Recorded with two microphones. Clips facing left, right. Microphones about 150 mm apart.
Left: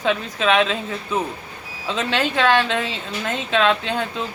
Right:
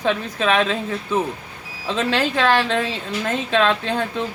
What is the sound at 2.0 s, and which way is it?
Speech, 35° right (ahead or behind).